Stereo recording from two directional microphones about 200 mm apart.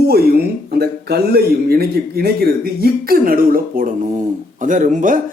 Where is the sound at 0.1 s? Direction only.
50° right (ahead or behind).